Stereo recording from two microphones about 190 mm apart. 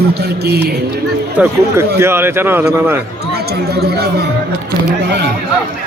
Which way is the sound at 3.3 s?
55° right (ahead or behind).